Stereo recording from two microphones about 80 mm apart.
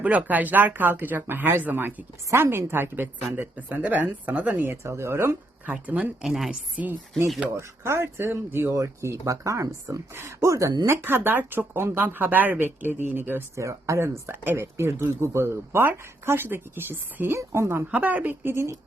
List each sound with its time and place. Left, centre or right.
0.0 s speech: centre
5.8 s speech: centre
6.2 s a woman's voice: centre
6.7 s speech: right
8.7 s speech: right
10.8 s speech: right
13.6 s speech: right
17.9 s speech: centre